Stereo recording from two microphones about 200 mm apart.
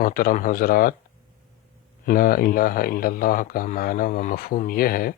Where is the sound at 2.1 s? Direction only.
45° left (ahead or behind).